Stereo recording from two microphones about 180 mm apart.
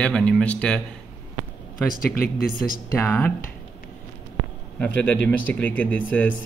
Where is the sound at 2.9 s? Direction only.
15° left (ahead or behind).